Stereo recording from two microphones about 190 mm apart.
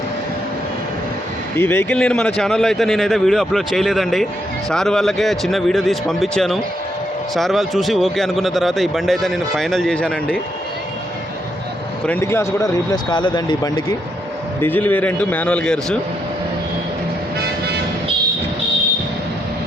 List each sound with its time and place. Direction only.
1.5 s speech: 10° left (ahead or behind)
12.0 s speech: 10° left (ahead or behind)
14.6 s a man's voice: 10° left (ahead or behind)